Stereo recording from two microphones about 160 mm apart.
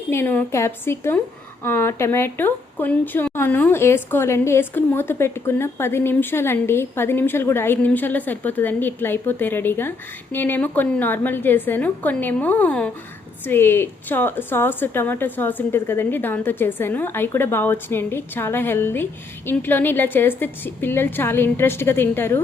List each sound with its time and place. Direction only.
0.1 s speech: 15° left (ahead or behind)